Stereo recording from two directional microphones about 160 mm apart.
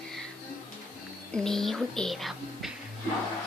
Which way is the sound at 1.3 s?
5° left (ahead or behind).